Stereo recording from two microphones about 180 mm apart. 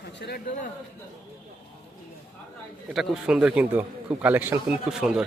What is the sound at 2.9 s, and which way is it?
A man's voice, 5° right (ahead or behind).